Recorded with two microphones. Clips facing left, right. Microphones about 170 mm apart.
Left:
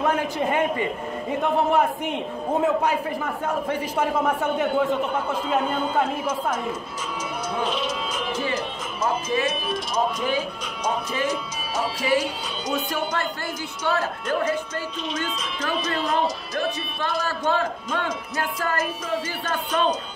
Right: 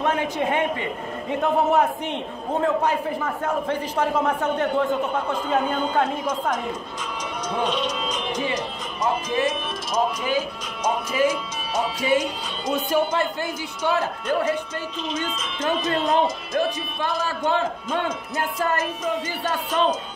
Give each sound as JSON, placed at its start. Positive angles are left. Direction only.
{"t": 0.0, "sound": "a man's voice", "side_deg": 0}
{"t": 7.6, "sound": "a man's voice", "side_deg": 5}
{"t": 12.9, "sound": "speech", "side_deg": -15}
{"t": 15.7, "sound": "a man's voice", "side_deg": 0}
{"t": 17.5, "sound": "a man's voice", "side_deg": -20}
{"t": 19.4, "sound": "a man's voice", "side_deg": 0}